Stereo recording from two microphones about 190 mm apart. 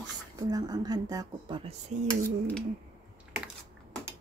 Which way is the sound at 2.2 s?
10° left (ahead or behind).